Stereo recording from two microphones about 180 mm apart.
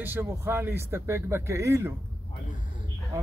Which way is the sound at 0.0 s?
10° right (ahead or behind).